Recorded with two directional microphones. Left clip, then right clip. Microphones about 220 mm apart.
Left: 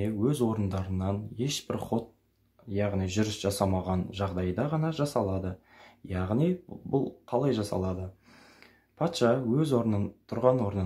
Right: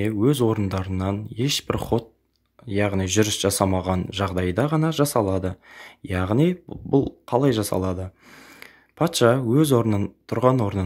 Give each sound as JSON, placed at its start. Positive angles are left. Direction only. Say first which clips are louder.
{"t": 0.0, "sound": "speech", "louder": "right 8 dB", "side_deg": -35}